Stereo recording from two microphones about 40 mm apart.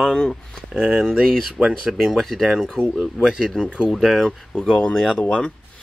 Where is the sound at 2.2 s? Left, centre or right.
Centre.